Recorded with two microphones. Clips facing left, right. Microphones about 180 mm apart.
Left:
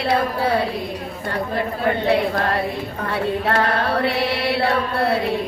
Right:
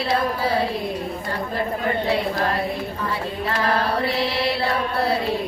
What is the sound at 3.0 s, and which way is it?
Chant, 65° left (ahead or behind).